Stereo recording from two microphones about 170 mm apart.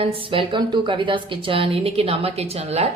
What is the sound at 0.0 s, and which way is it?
A woman's voice, 30° right (ahead or behind).